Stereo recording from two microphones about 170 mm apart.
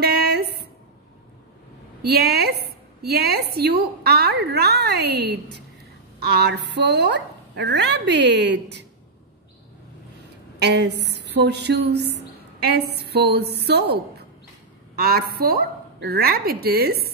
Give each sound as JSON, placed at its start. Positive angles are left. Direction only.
{"t": 0.0, "sound": "a sound", "side_deg": -70}
{"t": 2.0, "sound": "a woman's voice", "side_deg": -70}
{"t": 10.6, "sound": "a woman's voice", "side_deg": -80}